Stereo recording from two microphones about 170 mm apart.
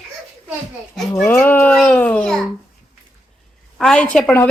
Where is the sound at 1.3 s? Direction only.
10° left (ahead or behind).